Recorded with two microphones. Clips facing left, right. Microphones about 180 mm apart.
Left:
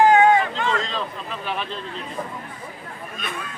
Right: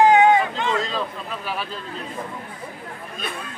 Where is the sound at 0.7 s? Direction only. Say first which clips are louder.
Right 2 dB; 5° right (ahead or behind).